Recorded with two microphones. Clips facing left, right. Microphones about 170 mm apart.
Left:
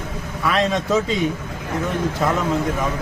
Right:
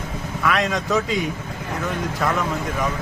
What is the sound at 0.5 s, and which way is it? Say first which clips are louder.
Speech: left 3 dB; 25° left (ahead or behind).